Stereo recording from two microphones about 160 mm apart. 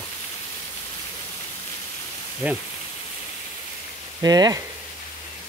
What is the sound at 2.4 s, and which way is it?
Speech, 10° right (ahead or behind).